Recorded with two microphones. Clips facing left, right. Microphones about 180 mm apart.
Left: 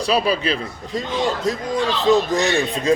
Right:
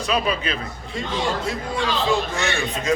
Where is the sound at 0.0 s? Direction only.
35° left (ahead or behind).